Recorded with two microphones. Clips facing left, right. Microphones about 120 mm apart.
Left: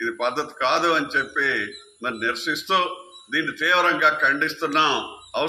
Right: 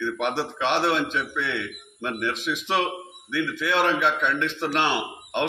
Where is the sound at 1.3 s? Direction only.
70° left (ahead or behind).